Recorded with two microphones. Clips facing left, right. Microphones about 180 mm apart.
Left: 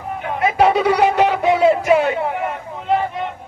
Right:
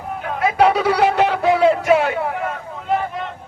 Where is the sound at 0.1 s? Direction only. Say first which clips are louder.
Left 1 dB; centre (ahead or behind).